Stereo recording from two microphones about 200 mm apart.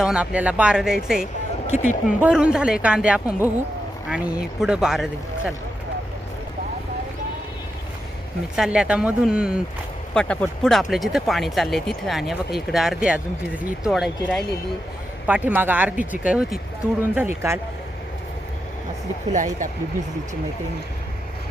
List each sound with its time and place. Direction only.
0.0 s speech: 5° right (ahead or behind)
1.2 s speech: 35° left (ahead or behind)
2.2 s speech: 5° right (ahead or behind)
8.5 s speech: 5° right (ahead or behind)
19.3 s speech: 40° right (ahead or behind)